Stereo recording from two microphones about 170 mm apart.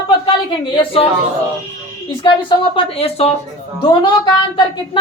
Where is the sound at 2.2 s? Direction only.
30° left (ahead or behind).